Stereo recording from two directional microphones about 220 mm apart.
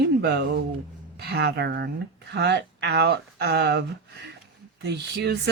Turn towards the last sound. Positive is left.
turn(degrees=-50)  # may be behind; listen again after turning